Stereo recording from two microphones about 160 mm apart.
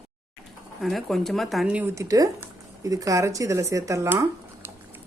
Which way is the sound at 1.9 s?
20° right (ahead or behind).